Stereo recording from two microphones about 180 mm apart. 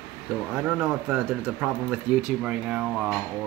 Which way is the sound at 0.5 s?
5° right (ahead or behind).